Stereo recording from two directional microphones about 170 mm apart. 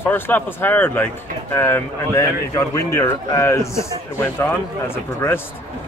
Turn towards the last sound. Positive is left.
turn(degrees=15)  # may be behind; listen again after turning